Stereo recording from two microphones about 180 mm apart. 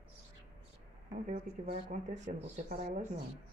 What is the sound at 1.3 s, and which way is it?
Speech, 40° right (ahead or behind).